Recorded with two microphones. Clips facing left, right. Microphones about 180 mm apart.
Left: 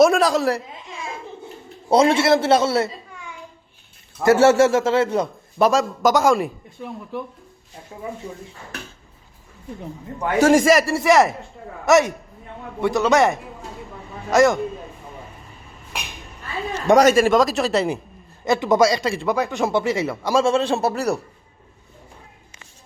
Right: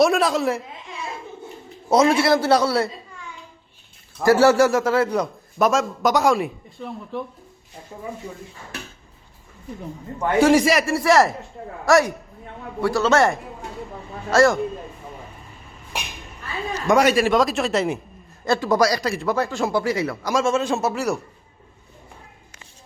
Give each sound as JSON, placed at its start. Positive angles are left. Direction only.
{"t": 0.0, "sound": "speech", "side_deg": 0}
{"t": 1.9, "sound": "a man's voice", "side_deg": 30}
{"t": 4.2, "sound": "a man's voice", "side_deg": 25}
{"t": 5.6, "sound": "speech", "side_deg": 0}
{"t": 10.3, "sound": "a man's voice", "side_deg": 45}
{"t": 10.7, "sound": "speech", "side_deg": 0}
{"t": 11.9, "sound": "a man's voice", "side_deg": 20}
{"t": 14.3, "sound": "speech", "side_deg": 20}
{"t": 16.7, "sound": "speech", "side_deg": 35}
{"t": 17.2, "sound": "speech", "side_deg": 0}
{"t": 18.4, "sound": "a man's voice", "side_deg": 20}